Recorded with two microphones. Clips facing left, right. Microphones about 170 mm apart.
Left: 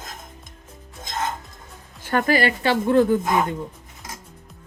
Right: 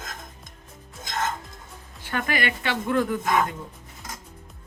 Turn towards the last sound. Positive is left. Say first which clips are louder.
# left 5 dB
turn(degrees=30)  # may be behind; listen again after turning